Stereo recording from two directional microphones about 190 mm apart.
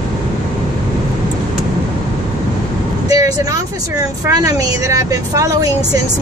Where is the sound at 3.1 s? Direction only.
20° right (ahead or behind).